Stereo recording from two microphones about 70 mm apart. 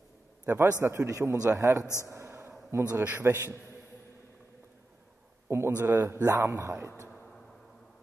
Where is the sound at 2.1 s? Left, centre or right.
Right.